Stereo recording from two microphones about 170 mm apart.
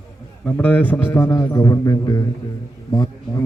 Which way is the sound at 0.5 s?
10° left (ahead or behind).